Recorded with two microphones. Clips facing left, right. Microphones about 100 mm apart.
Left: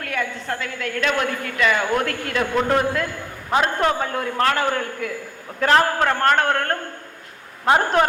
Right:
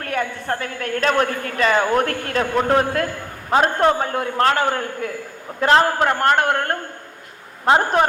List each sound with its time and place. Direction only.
0.0 s a woman's voice: 40° right (ahead or behind)
3.5 s a man's voice: 35° right (ahead or behind)